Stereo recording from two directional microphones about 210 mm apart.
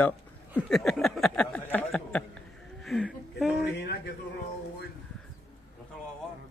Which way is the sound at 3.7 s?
55° left (ahead or behind).